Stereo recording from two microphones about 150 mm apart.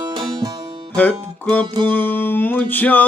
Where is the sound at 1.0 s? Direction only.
10° left (ahead or behind).